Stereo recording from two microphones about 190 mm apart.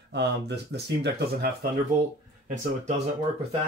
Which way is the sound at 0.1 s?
60° right (ahead or behind).